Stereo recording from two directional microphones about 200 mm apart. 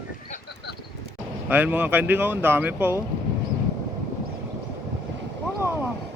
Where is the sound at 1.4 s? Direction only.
10° right (ahead or behind).